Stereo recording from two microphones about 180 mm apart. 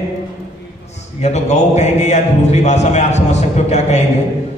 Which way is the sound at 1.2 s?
40° left (ahead or behind).